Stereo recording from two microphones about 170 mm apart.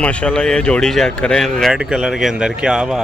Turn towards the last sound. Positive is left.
turn(degrees=-5)  # may be behind; listen again after turning